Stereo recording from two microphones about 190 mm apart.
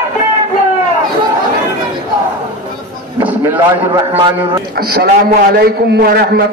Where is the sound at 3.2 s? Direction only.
10° right (ahead or behind).